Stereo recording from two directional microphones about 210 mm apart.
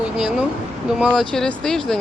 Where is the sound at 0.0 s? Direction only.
5° right (ahead or behind).